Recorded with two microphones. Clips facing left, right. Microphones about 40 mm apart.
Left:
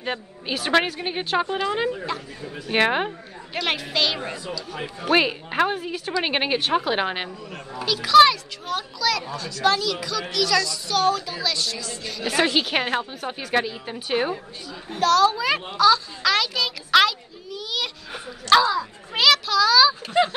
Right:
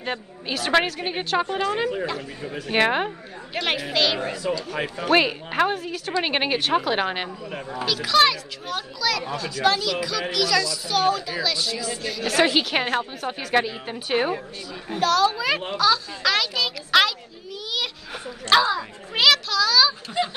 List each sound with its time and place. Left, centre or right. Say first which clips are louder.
0.0 s speech: even; centre
2.7 s speech: even; centre
4.7 s speech: right 4 dB; right
5.0 s speech: even; centre
12.2 s speech: right 1 dB; centre
13.6 s a woman's voice: right 1 dB; centre
17.6 s a sound: even; centre
18.6 s a woman's voice: left 1 dB; centre
19.1 s speech: left 1 dB; centre